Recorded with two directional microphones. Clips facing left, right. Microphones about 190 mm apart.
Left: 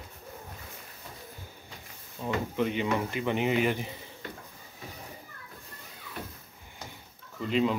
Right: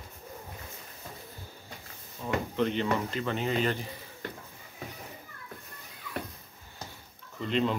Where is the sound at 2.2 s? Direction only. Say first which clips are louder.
Even; 15° left (ahead or behind).